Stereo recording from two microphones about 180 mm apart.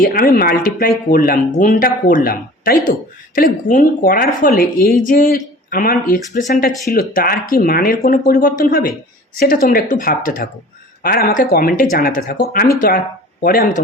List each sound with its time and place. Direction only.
0.0 s speech: 55° left (ahead or behind)